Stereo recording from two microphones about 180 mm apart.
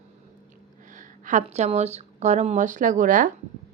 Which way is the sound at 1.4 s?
35° right (ahead or behind).